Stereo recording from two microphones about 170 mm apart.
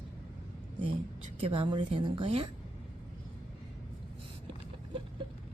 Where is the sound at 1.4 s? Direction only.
30° right (ahead or behind).